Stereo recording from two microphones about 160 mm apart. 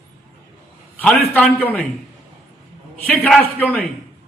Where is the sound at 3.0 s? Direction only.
10° left (ahead or behind).